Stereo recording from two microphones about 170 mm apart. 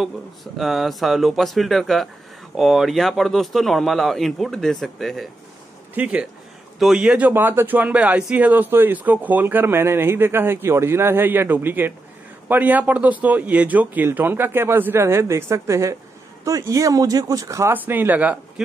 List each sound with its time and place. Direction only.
0.0 s speech: centre (ahead or behind)